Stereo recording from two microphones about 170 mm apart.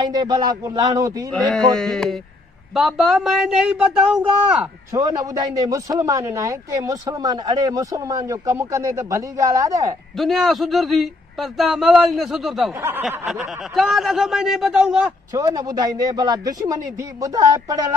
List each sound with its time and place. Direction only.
0.1 s a man's voice: 25° right (ahead or behind)
1.5 s a man's voice: 5° left (ahead or behind)
4.9 s a man's voice: 20° right (ahead or behind)
10.1 s a man's voice: centre (ahead or behind)
15.3 s a man's voice: 20° right (ahead or behind)